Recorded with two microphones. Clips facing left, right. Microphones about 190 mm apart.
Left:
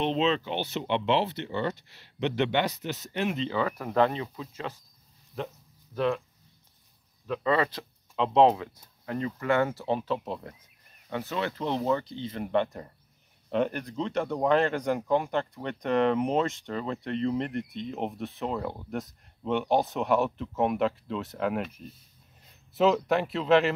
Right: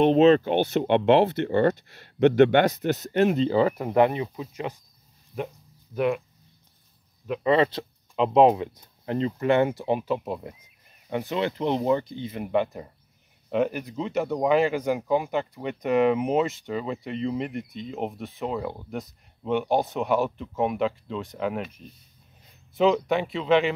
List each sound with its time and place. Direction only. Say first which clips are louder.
0.0 s speech: right 9 dB; 50° right (ahead or behind); by 4.7 s 15° right (ahead or behind)
5.9 s speech: right 3 dB; 15° right (ahead or behind)
7.2 s a man's voice: right 5 dB; 20° right (ahead or behind); by 23.7 s centre (ahead or behind)